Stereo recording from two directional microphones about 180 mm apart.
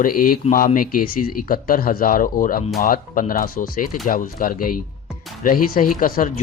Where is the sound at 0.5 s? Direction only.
50° left (ahead or behind).